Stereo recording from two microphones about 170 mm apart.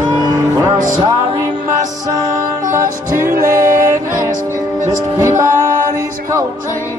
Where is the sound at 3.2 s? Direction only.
55° right (ahead or behind).